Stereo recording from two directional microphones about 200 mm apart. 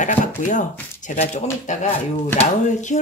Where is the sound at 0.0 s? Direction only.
35° left (ahead or behind).